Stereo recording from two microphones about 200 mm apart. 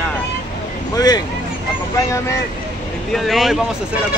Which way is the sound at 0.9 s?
20° left (ahead or behind).